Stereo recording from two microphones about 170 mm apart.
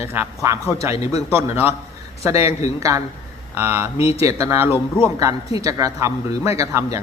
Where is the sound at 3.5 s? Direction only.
15° right (ahead or behind).